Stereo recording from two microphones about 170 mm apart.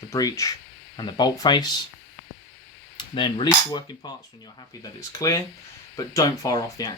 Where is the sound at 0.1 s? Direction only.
20° left (ahead or behind).